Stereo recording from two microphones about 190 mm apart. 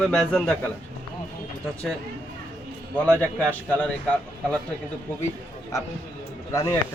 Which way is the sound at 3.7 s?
5° left (ahead or behind).